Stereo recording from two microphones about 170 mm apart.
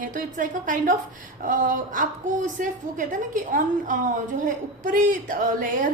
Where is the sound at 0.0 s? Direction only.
50° right (ahead or behind).